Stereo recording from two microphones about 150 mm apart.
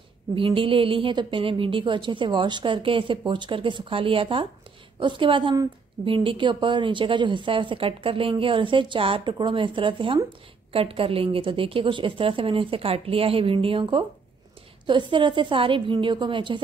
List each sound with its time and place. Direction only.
0.4 s a woman's voice: 35° right (ahead or behind)